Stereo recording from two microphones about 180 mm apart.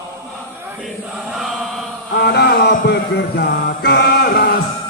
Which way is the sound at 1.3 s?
Centre (ahead or behind).